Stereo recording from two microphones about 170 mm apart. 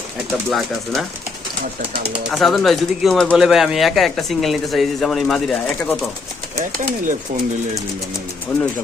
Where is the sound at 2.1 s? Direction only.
Centre (ahead or behind).